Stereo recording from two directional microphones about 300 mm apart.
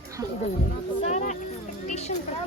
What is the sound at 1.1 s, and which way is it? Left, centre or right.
Speech, left.